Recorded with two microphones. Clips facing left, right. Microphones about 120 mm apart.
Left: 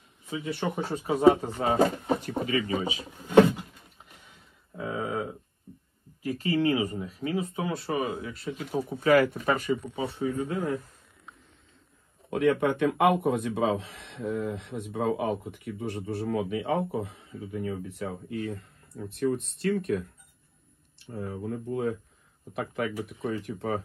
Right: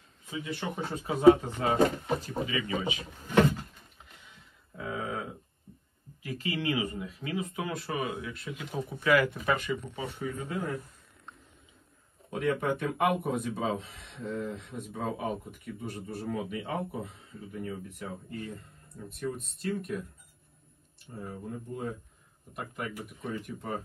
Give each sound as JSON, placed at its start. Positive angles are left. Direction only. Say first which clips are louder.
{"t": 0.5, "sound": "speech", "louder": "left 6 dB", "side_deg": 55}
{"t": 0.7, "sound": "speech", "louder": "left 5 dB", "side_deg": 25}
{"t": 2.1, "sound": "speech", "louder": "left 3 dB", "side_deg": 60}
{"t": 2.5, "sound": "speech", "louder": "left 5 dB", "side_deg": 40}
{"t": 3.2, "sound": "a sound", "louder": "left 6 dB", "side_deg": 15}
{"t": 4.7, "sound": "a sound", "louder": "left 4 dB", "side_deg": 30}
{"t": 6.2, "sound": "speech", "louder": "left 7 dB", "side_deg": 40}
{"t": 8.6, "sound": "speech", "louder": "left 5 dB", "side_deg": 0}
{"t": 9.1, "sound": "speech", "louder": "left 4 dB", "side_deg": 45}
{"t": 10.1, "sound": "speech", "louder": "left 7 dB", "side_deg": 30}
{"t": 12.3, "sound": "speech", "louder": "left 5 dB", "side_deg": 65}
{"t": 21.0, "sound": "speech", "louder": "left 6 dB", "side_deg": 70}
{"t": 22.6, "sound": "speech", "louder": "left 7 dB", "side_deg": 80}